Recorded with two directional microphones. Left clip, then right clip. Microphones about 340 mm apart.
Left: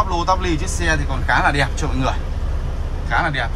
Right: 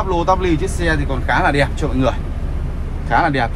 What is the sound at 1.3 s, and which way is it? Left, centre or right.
Speech, centre.